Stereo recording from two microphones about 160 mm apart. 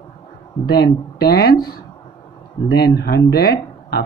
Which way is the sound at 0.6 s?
80° left.